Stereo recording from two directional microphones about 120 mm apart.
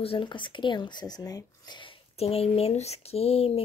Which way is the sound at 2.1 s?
55° left (ahead or behind).